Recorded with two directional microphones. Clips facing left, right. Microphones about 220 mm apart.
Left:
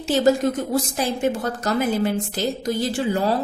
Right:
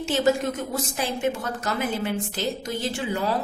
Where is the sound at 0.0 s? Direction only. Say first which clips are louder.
Left 4 dB; 35° left (ahead or behind).